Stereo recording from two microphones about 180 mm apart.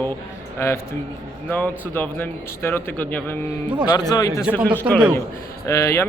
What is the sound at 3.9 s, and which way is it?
Speech, 20° left (ahead or behind).